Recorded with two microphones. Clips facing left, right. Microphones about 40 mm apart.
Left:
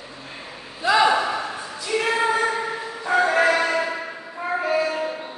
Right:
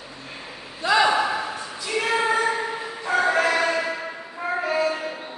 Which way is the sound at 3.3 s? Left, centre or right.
Centre.